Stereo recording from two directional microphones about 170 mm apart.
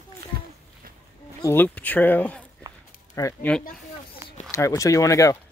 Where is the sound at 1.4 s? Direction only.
10° left (ahead or behind).